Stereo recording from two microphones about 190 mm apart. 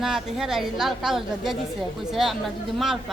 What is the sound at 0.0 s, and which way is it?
A woman's voice, 5° right (ahead or behind).